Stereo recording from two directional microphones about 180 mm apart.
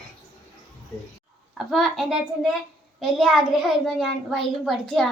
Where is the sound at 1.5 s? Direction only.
Centre (ahead or behind).